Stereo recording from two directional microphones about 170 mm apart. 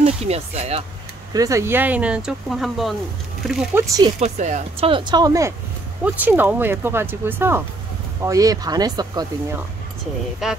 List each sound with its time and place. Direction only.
0.0 s speech: 40° right (ahead or behind)
1.3 s speech: 20° right (ahead or behind); by 3.9 s 5° right (ahead or behind)
4.2 s speech: 45° right (ahead or behind); by 5.5 s 20° right (ahead or behind)
6.0 s speech: 10° right (ahead or behind)
10.4 s speech: centre (ahead or behind)